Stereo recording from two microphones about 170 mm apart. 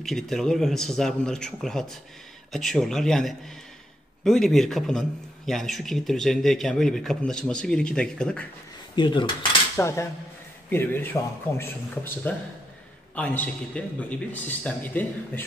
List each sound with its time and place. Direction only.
0.0 s a man's voice: centre (ahead or behind)
8.9 s speech: 30° left (ahead or behind)
9.8 s a man's voice: 15° left (ahead or behind)